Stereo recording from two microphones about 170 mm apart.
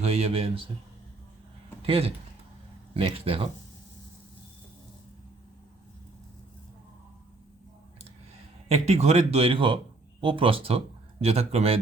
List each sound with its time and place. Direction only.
0.0 s speech: 35° right (ahead or behind)
1.9 s speech: 35° right (ahead or behind)
8.7 s a man's voice: 40° right (ahead or behind)